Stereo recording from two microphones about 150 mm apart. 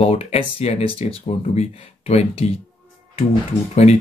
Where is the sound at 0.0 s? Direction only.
40° left (ahead or behind).